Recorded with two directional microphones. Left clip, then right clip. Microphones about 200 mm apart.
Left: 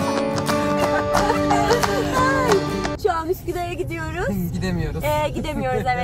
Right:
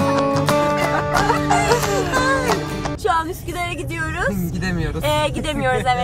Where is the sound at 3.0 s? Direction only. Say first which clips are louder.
Right 4 dB; 30° left (ahead or behind).